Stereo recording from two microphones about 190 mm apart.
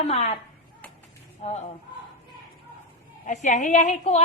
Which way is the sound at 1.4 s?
35° left (ahead or behind).